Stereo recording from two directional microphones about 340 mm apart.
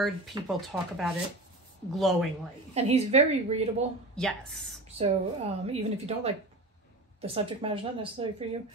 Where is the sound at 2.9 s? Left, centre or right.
Centre.